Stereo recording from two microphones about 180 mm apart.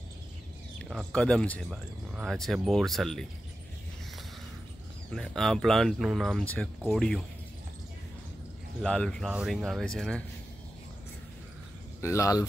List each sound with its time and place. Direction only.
0.8 s speech: centre (ahead or behind)
5.1 s speech: centre (ahead or behind)
8.8 s speech: 5° left (ahead or behind)
12.0 s speech: 15° left (ahead or behind)